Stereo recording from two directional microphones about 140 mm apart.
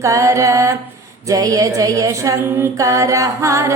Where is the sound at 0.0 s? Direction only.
20° right (ahead or behind).